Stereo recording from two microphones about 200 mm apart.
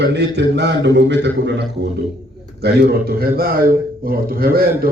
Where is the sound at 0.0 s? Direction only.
60° right (ahead or behind).